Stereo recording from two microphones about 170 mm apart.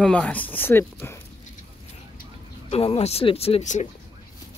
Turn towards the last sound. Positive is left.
turn(degrees=40)  # may be behind; listen again after turning